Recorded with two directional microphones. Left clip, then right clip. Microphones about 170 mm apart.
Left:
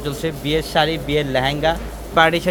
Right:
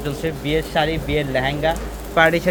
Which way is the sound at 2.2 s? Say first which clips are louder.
Left 1 dB; 20° left (ahead or behind).